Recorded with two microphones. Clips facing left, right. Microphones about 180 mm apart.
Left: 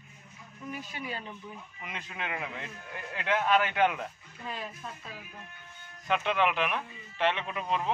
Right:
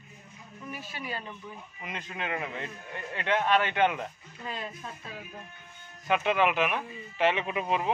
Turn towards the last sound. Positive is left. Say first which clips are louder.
# right 3 dB
turn(degrees=-10)  # may be behind; listen again after turning